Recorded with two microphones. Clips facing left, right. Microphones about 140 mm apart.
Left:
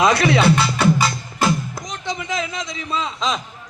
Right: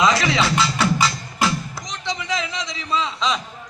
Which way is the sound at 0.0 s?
55° left (ahead or behind).